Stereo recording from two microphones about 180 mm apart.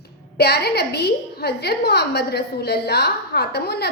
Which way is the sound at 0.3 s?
65° left (ahead or behind).